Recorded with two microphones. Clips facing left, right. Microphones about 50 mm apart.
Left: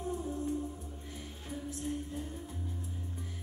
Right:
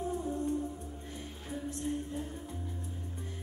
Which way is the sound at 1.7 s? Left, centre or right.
Centre.